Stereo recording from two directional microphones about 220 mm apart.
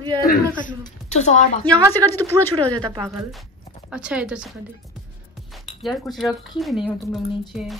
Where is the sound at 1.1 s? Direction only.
30° left (ahead or behind).